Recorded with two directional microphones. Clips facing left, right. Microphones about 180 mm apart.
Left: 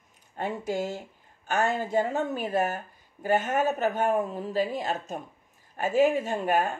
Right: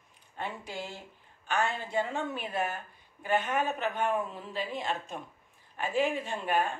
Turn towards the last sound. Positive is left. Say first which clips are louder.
# left 4 dB
turn(degrees=45)  # may be behind; listen again after turning